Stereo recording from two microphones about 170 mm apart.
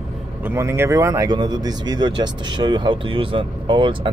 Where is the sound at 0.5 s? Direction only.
15° right (ahead or behind).